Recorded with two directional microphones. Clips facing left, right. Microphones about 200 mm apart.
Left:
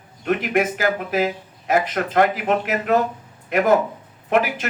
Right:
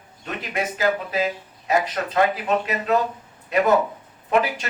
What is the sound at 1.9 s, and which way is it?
Speech, 55° left (ahead or behind).